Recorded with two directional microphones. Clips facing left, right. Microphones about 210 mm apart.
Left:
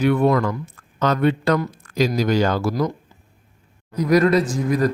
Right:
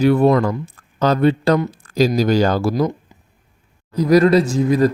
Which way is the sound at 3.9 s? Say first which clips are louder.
Right 4 dB; 30° right (ahead or behind).